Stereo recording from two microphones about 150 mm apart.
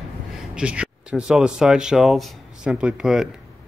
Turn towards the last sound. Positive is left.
turn(degrees=-5)  # may be behind; listen again after turning